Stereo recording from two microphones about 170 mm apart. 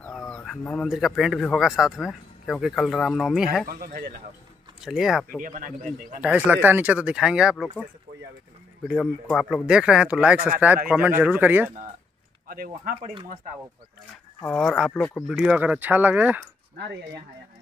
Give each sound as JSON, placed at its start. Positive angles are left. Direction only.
{"t": 0.0, "sound": "a man's voice", "side_deg": 5}
{"t": 3.6, "sound": "speech", "side_deg": -60}
{"t": 4.8, "sound": "speech", "side_deg": 0}
{"t": 5.4, "sound": "speech", "side_deg": -50}
{"t": 6.2, "sound": "speech", "side_deg": -10}
{"t": 9.0, "sound": "speech", "side_deg": 0}
{"t": 12.4, "sound": "speech", "side_deg": -55}
{"t": 14.4, "sound": "speech", "side_deg": 5}
{"t": 15.2, "sound": "speech", "side_deg": -5}
{"t": 16.7, "sound": "speech", "side_deg": -75}